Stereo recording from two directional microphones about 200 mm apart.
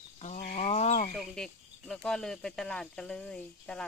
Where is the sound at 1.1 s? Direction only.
5° left (ahead or behind).